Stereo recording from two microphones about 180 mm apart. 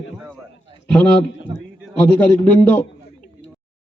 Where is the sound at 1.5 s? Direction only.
25° right (ahead or behind).